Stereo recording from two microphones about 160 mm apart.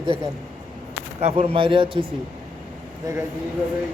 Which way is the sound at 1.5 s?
30° right (ahead or behind).